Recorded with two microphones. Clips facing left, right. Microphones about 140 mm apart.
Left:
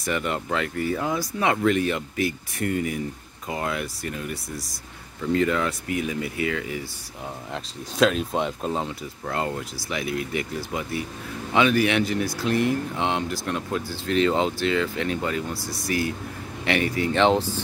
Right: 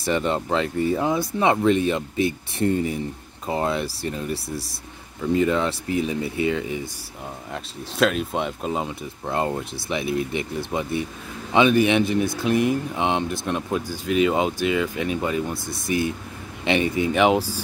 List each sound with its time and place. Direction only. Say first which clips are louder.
0.0 s speech: right 4 dB; 25° right (ahead or behind)
5.3 s speech: right 2 dB; 20° right (ahead or behind)
7.5 s speech: even; centre (ahead or behind)
8.8 s speech: right 1 dB; 20° right (ahead or behind)